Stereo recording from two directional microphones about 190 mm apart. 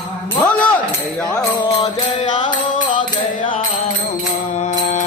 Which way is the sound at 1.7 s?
35° left (ahead or behind).